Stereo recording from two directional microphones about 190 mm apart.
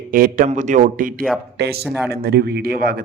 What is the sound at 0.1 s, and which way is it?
A man's voice, 45° right (ahead or behind).